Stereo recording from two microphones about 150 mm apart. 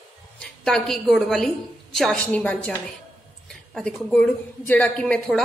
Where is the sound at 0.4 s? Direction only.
5° left (ahead or behind).